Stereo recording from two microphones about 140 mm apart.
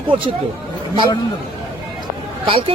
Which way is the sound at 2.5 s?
40° right (ahead or behind).